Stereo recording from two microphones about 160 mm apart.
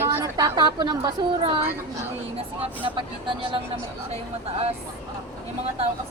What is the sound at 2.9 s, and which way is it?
Speech, 30° right (ahead or behind).